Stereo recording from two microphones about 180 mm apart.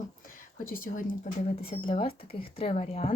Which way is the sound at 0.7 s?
50° left (ahead or behind).